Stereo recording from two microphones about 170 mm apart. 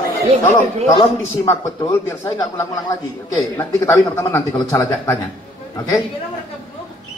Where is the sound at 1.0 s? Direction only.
20° left (ahead or behind).